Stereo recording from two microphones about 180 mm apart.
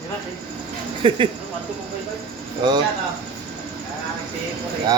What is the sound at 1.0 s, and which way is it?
Speech, 30° right (ahead or behind).